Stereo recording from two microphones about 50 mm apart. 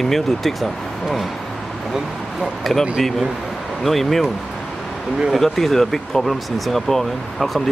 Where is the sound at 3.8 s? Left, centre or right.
Centre.